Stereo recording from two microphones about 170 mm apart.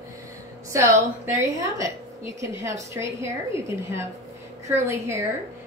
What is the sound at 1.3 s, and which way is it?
Speech, 20° right (ahead or behind).